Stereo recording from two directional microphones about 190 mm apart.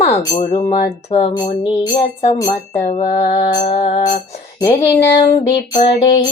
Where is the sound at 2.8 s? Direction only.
40° left (ahead or behind).